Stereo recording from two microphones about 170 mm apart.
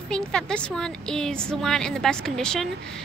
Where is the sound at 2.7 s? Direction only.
85° right.